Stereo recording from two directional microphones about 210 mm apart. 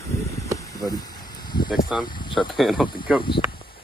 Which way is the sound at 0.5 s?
15° left (ahead or behind).